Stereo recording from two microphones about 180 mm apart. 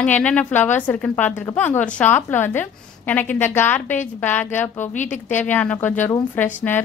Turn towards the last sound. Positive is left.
turn(degrees=10)  # may be behind; listen again after turning